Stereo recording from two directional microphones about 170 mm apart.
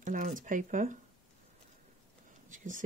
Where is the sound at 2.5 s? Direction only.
50° right (ahead or behind).